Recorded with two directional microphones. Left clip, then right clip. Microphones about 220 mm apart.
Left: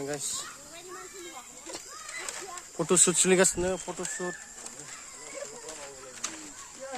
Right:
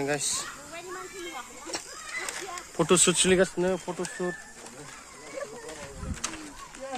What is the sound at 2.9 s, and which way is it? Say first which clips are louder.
Speech: right 1 dB; 25° left (ahead or behind).